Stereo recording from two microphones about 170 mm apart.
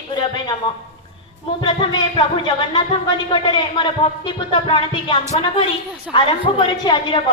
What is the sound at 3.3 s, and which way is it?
A woman's voice, 30° left (ahead or behind).